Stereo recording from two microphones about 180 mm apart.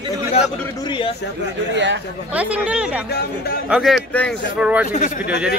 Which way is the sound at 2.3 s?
10° right (ahead or behind).